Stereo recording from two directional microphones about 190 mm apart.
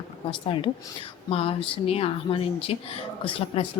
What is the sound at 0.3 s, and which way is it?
Speech, 25° left (ahead or behind).